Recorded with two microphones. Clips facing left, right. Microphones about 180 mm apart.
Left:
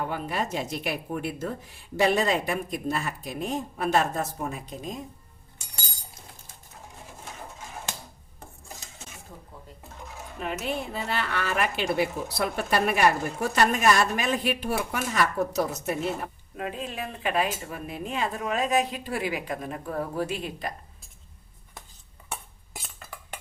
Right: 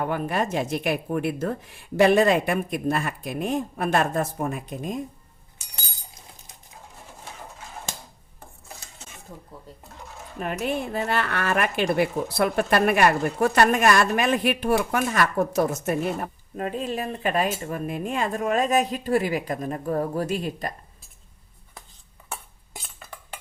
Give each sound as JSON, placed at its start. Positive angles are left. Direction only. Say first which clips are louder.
{"t": 0.0, "sound": "speech", "louder": "right 4 dB", "side_deg": -55}
{"t": 10.9, "sound": "a woman's voice", "louder": "right 4 dB", "side_deg": -55}